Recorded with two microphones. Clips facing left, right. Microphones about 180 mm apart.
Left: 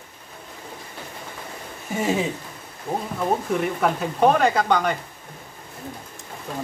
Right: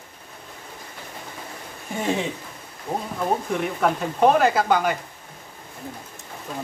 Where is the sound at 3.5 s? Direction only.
Centre (ahead or behind).